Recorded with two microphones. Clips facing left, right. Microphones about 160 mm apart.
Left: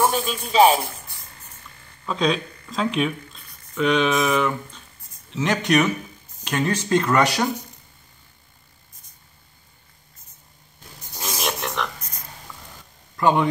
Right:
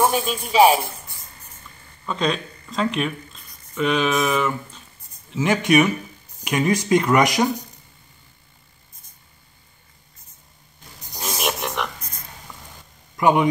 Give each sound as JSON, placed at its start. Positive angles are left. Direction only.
{"t": 0.4, "sound": "speech", "side_deg": -10}
{"t": 2.0, "sound": "speech", "side_deg": 0}
{"t": 11.1, "sound": "a sound", "side_deg": -15}
{"t": 13.1, "sound": "speech", "side_deg": -15}